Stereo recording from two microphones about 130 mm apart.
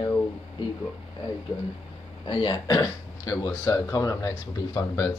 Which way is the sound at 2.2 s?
35° left (ahead or behind).